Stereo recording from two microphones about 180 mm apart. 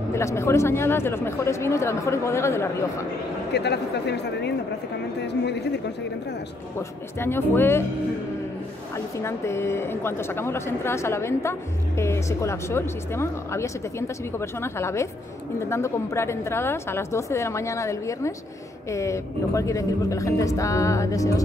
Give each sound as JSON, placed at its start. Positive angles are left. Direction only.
{"t": 0.1, "sound": "speech", "side_deg": 15}
{"t": 3.5, "sound": "speech", "side_deg": 70}
{"t": 7.2, "sound": "speech", "side_deg": 15}
{"t": 8.9, "sound": "speech", "side_deg": 15}